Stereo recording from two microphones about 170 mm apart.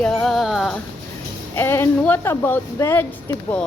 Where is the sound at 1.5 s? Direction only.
15° left (ahead or behind).